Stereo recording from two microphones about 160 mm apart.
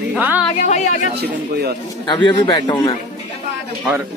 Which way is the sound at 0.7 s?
45° left (ahead or behind).